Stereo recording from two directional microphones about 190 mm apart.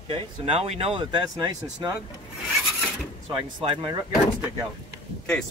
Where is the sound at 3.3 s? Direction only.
25° right (ahead or behind).